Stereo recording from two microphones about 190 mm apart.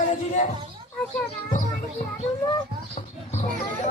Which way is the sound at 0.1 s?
40° left (ahead or behind).